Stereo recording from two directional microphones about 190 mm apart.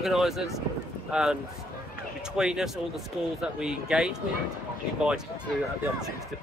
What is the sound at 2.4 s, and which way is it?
Speech, 5° right (ahead or behind).